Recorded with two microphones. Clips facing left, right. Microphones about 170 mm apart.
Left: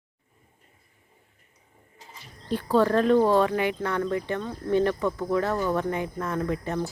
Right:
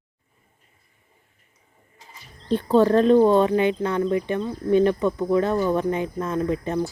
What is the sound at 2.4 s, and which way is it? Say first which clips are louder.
A woman's voice: right 4 dB; 25° right (ahead or behind).